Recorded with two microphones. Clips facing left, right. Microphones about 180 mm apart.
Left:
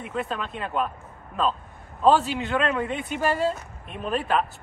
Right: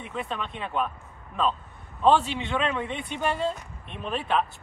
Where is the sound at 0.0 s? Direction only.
Centre (ahead or behind).